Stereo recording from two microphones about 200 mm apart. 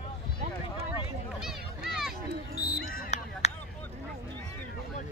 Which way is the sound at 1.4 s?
Centre (ahead or behind).